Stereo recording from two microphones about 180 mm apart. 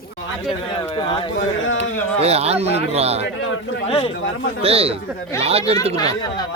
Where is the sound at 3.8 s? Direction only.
30° left (ahead or behind).